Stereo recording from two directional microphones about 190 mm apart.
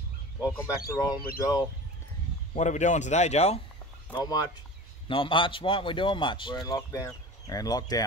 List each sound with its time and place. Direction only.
0.4 s speech: 15° left (ahead or behind)
2.5 s speech: 40° left (ahead or behind)
4.1 s a man's voice: 20° left (ahead or behind)